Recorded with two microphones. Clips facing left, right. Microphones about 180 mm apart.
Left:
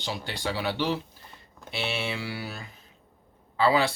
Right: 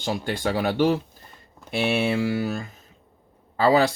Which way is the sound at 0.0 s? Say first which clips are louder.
Right 7 dB; 50° right (ahead or behind).